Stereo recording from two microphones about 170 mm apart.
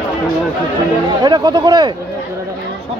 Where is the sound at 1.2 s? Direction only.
25° right (ahead or behind).